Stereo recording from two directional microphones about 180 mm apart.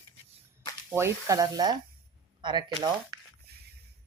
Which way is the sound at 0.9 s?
15° right (ahead or behind).